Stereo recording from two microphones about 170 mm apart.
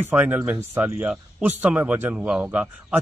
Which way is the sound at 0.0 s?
10° right (ahead or behind).